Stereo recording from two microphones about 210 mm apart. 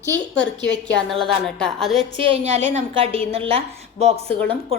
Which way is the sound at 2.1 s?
25° right (ahead or behind).